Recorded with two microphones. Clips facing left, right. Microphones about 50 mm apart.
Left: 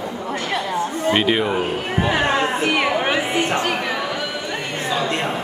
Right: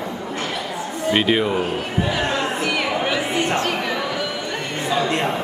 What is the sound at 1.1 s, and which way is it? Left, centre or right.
Speech, centre.